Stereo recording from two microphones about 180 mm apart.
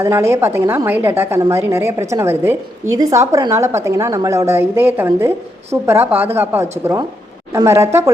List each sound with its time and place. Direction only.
0.0 s a woman's voice: 15° right (ahead or behind)